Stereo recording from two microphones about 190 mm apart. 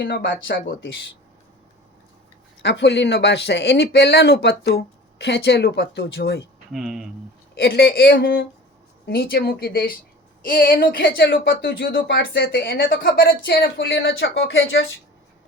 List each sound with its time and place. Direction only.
0.0 s speech: 65° left (ahead or behind); by 0.8 s 50° left (ahead or behind)
2.6 s a man's voice: 65° left (ahead or behind)
6.7 s speech: centre (ahead or behind)
7.5 s speech: 55° left (ahead or behind)
11.9 s a man's voice: 55° left (ahead or behind); by 14.8 s 85° left